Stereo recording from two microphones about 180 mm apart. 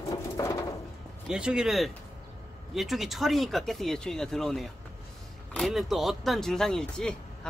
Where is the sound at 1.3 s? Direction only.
5° right (ahead or behind).